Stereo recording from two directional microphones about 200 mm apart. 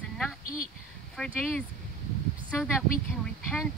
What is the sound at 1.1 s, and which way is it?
Speech, 5° left (ahead or behind).